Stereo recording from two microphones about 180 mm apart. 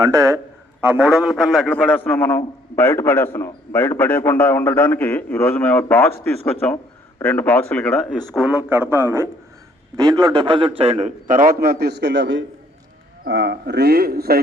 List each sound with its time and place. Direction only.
0.0 s a man's voice: 20° right (ahead or behind)
0.8 s a man's voice: 5° right (ahead or behind); by 12.5 s 85° right
13.2 s a man's voice: 70° right (ahead or behind)